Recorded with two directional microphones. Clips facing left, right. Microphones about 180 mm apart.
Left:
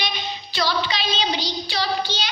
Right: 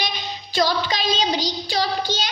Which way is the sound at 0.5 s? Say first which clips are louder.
Right 3 dB; 45° right (ahead or behind).